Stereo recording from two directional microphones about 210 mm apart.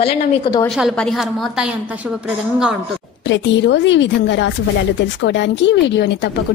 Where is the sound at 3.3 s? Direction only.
60° left (ahead or behind).